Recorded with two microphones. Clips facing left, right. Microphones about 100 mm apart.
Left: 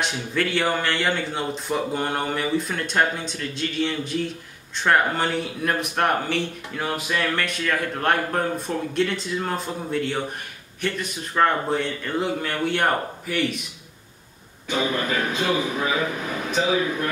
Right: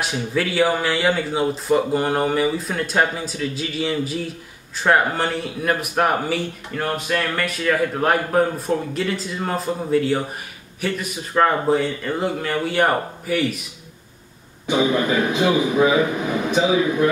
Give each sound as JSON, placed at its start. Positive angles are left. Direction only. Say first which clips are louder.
{"t": 0.0, "sound": "speech", "louder": "right 2 dB", "side_deg": -5}
{"t": 14.7, "sound": "a man's voice", "louder": "right 5 dB", "side_deg": -20}